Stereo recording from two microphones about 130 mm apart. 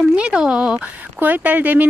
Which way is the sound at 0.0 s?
5° right (ahead or behind).